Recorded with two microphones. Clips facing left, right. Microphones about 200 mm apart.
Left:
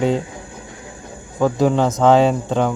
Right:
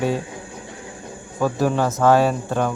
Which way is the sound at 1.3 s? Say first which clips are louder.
Left 4 dB; 20° left (ahead or behind).